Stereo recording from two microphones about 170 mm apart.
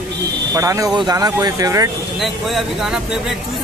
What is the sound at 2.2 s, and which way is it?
Speech, centre (ahead or behind).